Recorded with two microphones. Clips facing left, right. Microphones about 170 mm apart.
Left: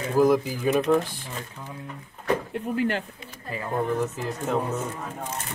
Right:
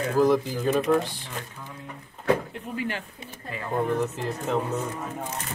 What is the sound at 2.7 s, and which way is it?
Speech, 55° left (ahead or behind).